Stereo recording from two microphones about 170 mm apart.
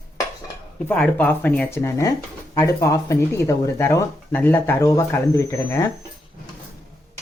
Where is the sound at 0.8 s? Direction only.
10° left (ahead or behind).